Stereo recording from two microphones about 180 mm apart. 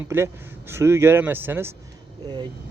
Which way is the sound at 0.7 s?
15° right (ahead or behind).